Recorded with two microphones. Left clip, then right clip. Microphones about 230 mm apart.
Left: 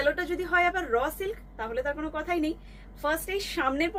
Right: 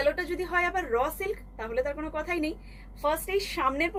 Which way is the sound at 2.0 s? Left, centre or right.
Centre.